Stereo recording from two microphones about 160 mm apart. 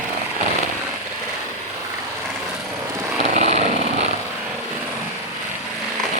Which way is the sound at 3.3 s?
45° right (ahead or behind).